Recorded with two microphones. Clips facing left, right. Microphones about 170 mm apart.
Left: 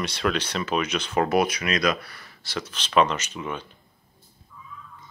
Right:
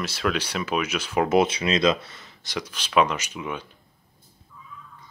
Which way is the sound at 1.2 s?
25° right (ahead or behind).